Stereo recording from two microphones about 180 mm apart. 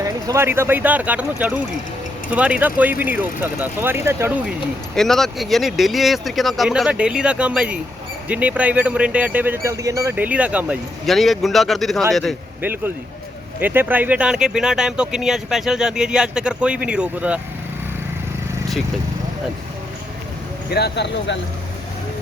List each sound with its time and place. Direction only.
0.0 s speech: 15° right (ahead or behind)
4.9 s speech: centre (ahead or behind)
12.6 s speech: 10° right (ahead or behind)
20.7 s speech: 65° left (ahead or behind)